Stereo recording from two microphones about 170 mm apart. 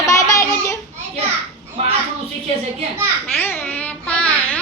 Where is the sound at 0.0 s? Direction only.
20° left (ahead or behind).